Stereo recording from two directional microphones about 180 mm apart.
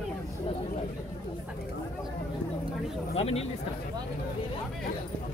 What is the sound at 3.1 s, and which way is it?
Speech, 35° left (ahead or behind).